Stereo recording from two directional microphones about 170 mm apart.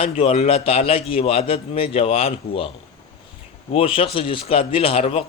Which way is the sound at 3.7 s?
30° left (ahead or behind).